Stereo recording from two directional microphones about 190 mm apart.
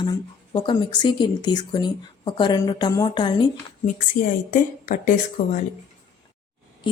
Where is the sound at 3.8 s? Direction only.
45° left (ahead or behind).